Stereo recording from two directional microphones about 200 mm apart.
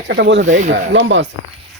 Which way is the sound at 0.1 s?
65° right (ahead or behind).